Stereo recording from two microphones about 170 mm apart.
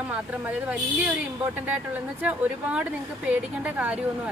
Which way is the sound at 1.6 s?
10° right (ahead or behind).